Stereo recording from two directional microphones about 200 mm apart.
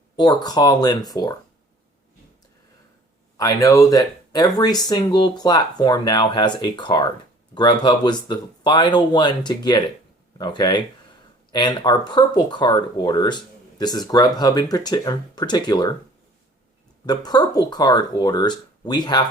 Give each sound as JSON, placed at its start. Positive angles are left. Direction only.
{"t": 0.2, "sound": "speech", "side_deg": 20}
{"t": 3.3, "sound": "speech", "side_deg": 15}
{"t": 17.1, "sound": "speech", "side_deg": 20}